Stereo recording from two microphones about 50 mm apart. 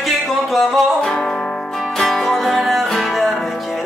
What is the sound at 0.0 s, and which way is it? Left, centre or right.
Music, centre.